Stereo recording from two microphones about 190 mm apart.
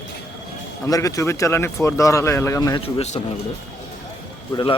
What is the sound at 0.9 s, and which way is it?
Speech, 15° left (ahead or behind).